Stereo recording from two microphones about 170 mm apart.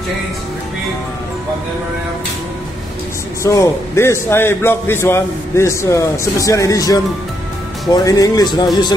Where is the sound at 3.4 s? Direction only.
15° left (ahead or behind).